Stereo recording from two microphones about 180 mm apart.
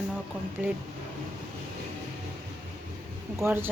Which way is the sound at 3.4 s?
15° right (ahead or behind).